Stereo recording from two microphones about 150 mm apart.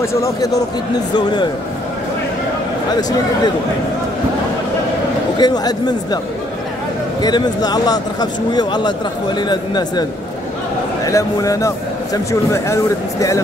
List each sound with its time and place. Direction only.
0.0 s speech: 20° left (ahead or behind)
3.0 s speech: 25° left (ahead or behind)
5.4 s speech: 25° left (ahead or behind)
7.2 s speech: 25° left (ahead or behind)
11.1 s speech: 20° left (ahead or behind)